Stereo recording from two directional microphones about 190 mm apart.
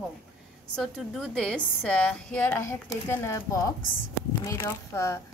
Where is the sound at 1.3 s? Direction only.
Centre (ahead or behind).